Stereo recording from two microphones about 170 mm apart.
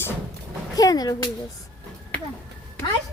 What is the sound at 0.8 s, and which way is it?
Speech, 20° left (ahead or behind).